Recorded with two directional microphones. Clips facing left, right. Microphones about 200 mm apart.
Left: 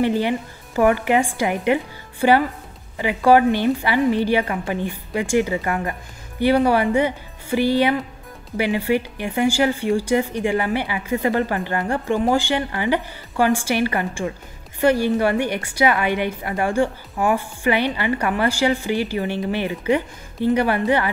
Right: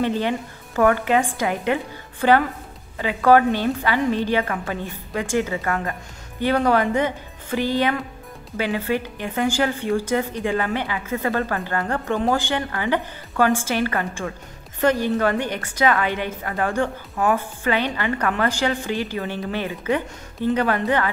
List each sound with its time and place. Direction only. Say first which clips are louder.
0.0 s a woman's voice: left 2 dB; 10° left (ahead or behind)